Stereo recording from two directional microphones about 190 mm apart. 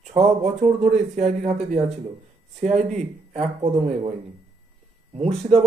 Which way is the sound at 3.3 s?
35° right (ahead or behind).